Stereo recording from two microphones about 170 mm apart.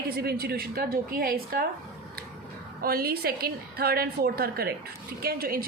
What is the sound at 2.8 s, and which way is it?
A woman's voice, 60° right (ahead or behind).